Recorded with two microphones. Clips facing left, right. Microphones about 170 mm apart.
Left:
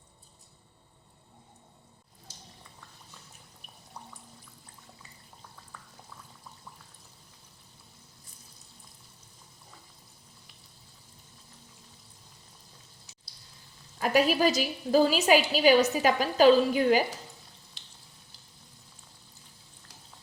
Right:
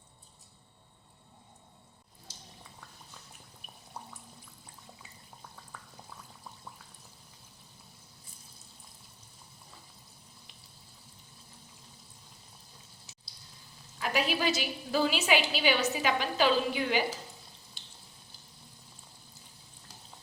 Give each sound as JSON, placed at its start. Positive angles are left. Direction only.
{"t": 14.0, "sound": "a woman's voice", "side_deg": 45}